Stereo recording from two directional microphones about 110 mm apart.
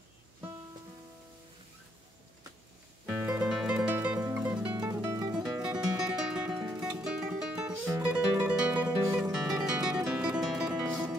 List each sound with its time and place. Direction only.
3.1 s music: 10° right (ahead or behind)
4.7 s music: 30° right (ahead or behind)
5.6 s music: 5° right (ahead or behind)